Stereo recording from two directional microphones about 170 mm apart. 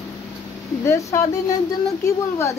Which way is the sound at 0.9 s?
20° left (ahead or behind).